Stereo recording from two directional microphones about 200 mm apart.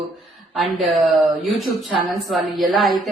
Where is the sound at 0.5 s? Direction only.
Centre (ahead or behind).